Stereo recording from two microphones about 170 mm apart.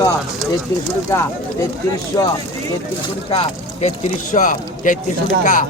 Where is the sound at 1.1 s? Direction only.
15° left (ahead or behind).